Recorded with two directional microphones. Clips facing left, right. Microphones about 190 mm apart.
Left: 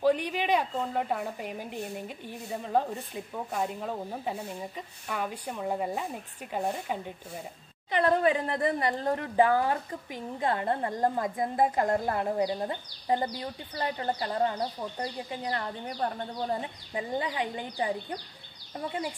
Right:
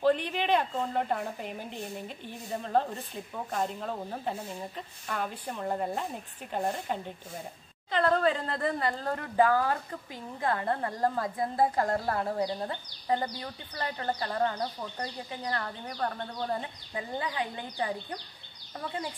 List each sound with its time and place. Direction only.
0.0 s a woman's voice: 10° left (ahead or behind)